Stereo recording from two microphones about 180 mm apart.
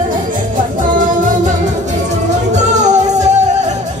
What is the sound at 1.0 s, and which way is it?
Music, 45° right (ahead or behind).